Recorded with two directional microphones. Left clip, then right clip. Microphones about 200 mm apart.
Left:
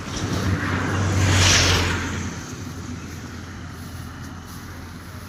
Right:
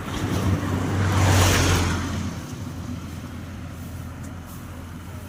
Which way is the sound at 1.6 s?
55° right (ahead or behind).